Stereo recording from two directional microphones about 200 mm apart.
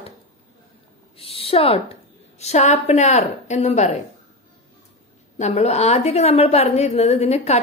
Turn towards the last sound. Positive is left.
turn(degrees=30)  # may be behind; listen again after turning